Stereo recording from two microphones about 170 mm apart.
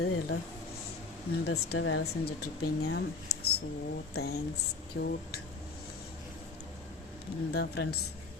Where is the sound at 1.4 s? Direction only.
85° left.